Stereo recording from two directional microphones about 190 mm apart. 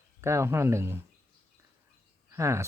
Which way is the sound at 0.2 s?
15° right (ahead or behind).